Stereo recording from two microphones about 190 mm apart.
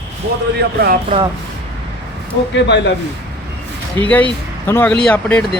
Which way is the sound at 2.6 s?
65° left (ahead or behind).